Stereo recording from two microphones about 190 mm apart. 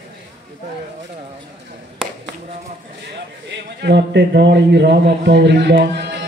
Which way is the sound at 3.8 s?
65° right (ahead or behind).